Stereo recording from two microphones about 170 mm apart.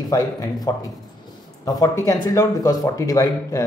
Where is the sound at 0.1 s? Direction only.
20° left (ahead or behind).